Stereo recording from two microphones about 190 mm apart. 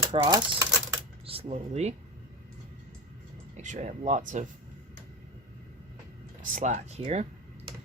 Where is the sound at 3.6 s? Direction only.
40° right (ahead or behind).